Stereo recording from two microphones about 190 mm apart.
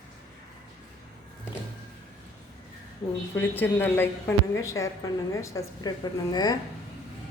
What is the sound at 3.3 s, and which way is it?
A woman's voice, 10° left (ahead or behind).